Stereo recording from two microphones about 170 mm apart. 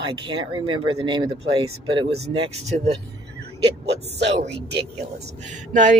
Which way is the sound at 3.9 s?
90° right.